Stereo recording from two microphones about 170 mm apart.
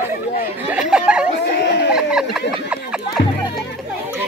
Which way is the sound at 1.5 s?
85° left.